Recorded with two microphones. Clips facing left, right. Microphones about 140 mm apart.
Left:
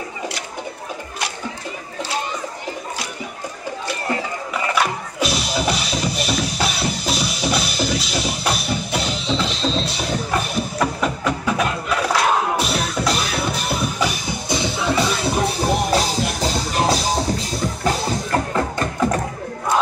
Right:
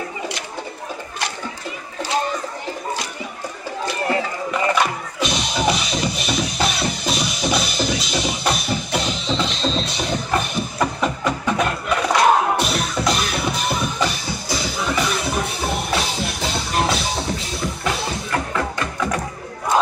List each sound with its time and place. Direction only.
4.7 s music: 5° left (ahead or behind)
14.5 s music: 25° left (ahead or behind)